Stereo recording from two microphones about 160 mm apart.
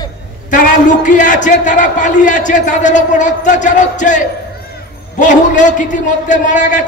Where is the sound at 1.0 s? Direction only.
50° left (ahead or behind).